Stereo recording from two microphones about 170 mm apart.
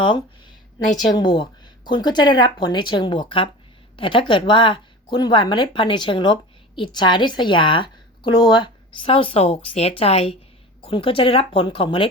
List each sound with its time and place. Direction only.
1.1 s a woman's voice: 25° left (ahead or behind)